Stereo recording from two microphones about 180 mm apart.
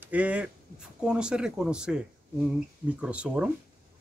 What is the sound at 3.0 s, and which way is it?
Speech, 5° right (ahead or behind).